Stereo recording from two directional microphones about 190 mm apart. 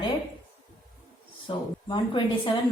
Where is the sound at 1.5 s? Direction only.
25° left (ahead or behind).